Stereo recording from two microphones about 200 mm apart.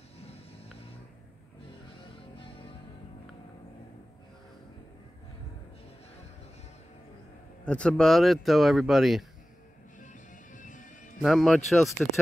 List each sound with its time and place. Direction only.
7.6 s speech: 5° left (ahead or behind)
10.5 s music: 40° left (ahead or behind)
11.1 s speech: centre (ahead or behind)